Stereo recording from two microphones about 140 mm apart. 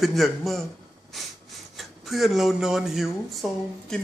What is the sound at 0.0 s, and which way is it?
Speech, centre (ahead or behind).